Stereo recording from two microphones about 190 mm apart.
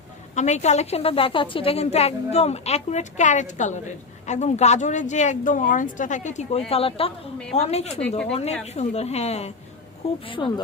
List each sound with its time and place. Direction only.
0.3 s a woman's voice: 35° left (ahead or behind)